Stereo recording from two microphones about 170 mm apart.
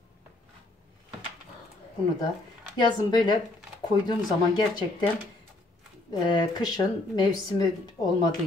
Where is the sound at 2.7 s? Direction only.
25° left (ahead or behind).